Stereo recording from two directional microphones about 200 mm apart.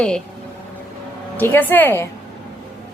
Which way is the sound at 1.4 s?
10° left (ahead or behind).